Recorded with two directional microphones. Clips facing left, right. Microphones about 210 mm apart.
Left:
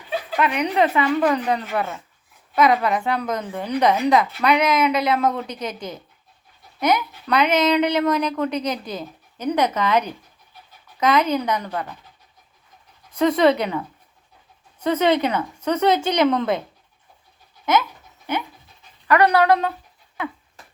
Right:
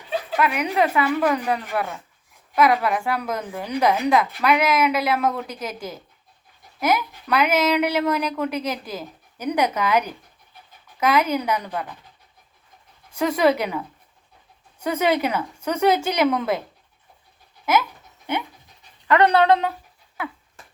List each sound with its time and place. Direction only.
0.3 s a woman's voice: 5° right (ahead or behind)
13.1 s speech: 10° right (ahead or behind)
19.0 s speech: 25° right (ahead or behind)